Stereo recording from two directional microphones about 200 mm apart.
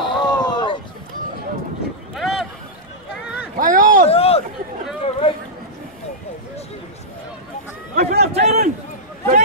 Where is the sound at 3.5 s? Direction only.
45° right (ahead or behind).